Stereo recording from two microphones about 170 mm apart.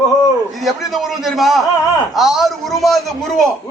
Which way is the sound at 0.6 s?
Centre (ahead or behind).